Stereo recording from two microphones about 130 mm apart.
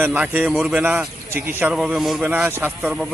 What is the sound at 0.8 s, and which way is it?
Speech, 15° right (ahead or behind).